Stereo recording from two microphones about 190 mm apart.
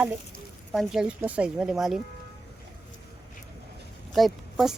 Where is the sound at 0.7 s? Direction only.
Centre (ahead or behind).